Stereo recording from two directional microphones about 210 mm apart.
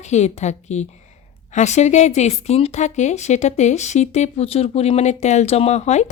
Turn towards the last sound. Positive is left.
turn(degrees=35)  # may be behind; listen again after turning